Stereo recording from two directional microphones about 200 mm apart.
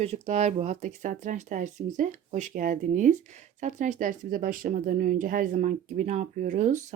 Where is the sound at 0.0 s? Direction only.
35° right (ahead or behind).